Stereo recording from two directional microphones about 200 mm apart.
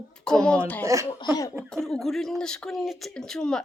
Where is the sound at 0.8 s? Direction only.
15° right (ahead or behind).